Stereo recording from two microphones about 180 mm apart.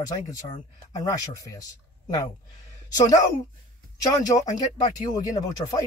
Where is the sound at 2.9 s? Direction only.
20° left (ahead or behind).